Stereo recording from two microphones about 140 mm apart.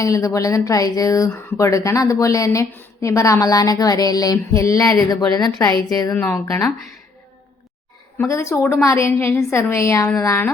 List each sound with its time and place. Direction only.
0.0 s speech: 25° left (ahead or behind)
6.1 s speech: 15° left (ahead or behind)
8.2 s speech: 20° left (ahead or behind)